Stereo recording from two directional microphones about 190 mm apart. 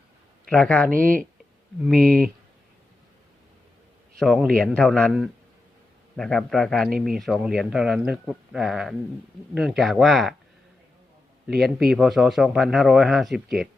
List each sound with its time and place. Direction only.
0.4 s speech: 5° left (ahead or behind)
0.9 s speech: 45° right (ahead or behind)
4.2 s a man's voice: centre (ahead or behind)
11.4 s a man's voice: centre (ahead or behind)